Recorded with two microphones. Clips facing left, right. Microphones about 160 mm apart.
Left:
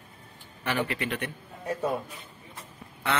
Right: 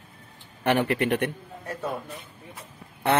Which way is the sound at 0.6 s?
55° right (ahead or behind).